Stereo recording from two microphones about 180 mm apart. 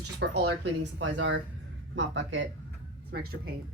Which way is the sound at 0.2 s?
75° right (ahead or behind).